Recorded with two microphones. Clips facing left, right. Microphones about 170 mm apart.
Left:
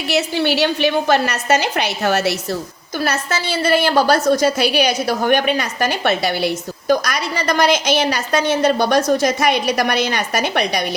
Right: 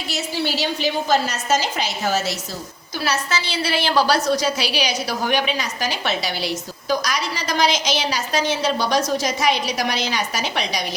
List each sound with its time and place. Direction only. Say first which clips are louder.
0.1 s a woman's voice: left 7 dB; 65° left (ahead or behind)
3.0 s a woman's voice: left 3 dB; 50° left (ahead or behind)